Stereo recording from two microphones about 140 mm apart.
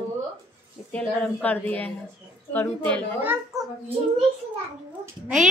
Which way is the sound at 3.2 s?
15° right (ahead or behind).